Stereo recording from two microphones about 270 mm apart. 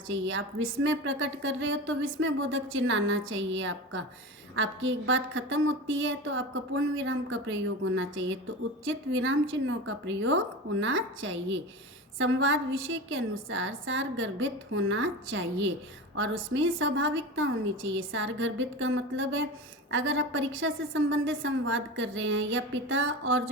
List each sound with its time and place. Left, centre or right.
0.1 s a woman's voice: right